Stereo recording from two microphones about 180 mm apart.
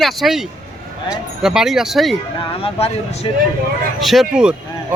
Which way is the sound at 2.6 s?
35° left (ahead or behind).